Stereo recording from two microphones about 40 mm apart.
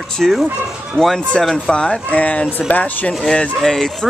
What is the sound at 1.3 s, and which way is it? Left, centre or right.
Speech, centre.